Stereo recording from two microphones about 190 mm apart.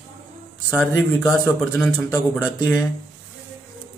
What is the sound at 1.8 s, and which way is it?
Speech, 15° left (ahead or behind).